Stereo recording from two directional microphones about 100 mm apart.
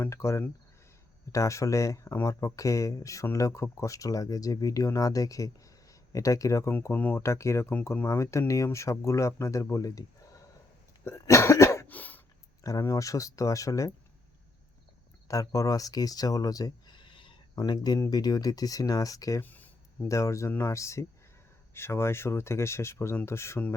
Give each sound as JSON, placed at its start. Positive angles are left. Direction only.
{"t": 0.0, "sound": "speech", "side_deg": 30}
{"t": 6.9, "sound": "speech", "side_deg": 20}
{"t": 11.0, "sound": "cough", "side_deg": 30}
{"t": 11.9, "sound": "a sound", "side_deg": 15}
{"t": 12.6, "sound": "speech", "side_deg": 35}
{"t": 15.3, "sound": "speech", "side_deg": 35}
{"t": 17.5, "sound": "speech", "side_deg": 40}
{"t": 19.4, "sound": "a sound", "side_deg": 15}
{"t": 20.1, "sound": "speech", "side_deg": 30}